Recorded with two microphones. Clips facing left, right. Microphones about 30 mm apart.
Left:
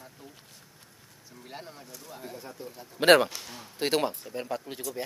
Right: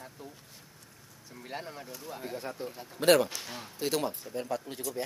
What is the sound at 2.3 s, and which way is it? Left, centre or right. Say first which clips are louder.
Speech: right 5 dB; right.